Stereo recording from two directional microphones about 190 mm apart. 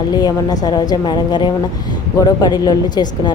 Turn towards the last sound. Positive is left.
turn(degrees=20)  # may be behind; listen again after turning